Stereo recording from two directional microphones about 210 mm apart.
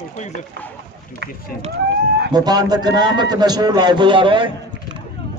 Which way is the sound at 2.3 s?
20° right (ahead or behind).